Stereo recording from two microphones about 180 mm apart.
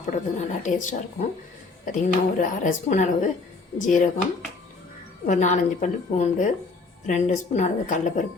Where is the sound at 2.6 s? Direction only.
40° left (ahead or behind).